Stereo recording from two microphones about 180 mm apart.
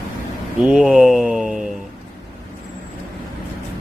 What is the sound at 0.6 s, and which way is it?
Speech, 5° right (ahead or behind).